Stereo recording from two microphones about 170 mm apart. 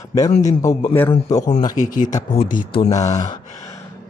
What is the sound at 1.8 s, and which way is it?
Speech, 50° left (ahead or behind).